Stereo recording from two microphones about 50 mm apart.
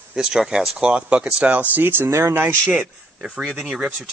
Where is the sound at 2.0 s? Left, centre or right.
Right.